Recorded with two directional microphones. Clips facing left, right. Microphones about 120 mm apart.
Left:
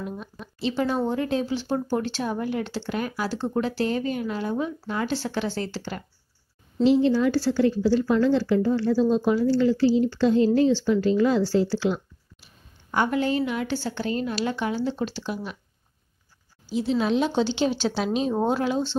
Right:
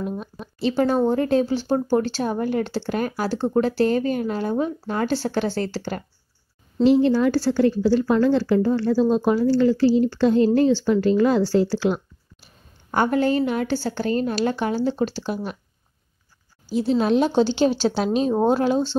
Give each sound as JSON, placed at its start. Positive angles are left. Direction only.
{"t": 0.2, "sound": "speech", "side_deg": -40}
{"t": 16.6, "sound": "speech", "side_deg": -40}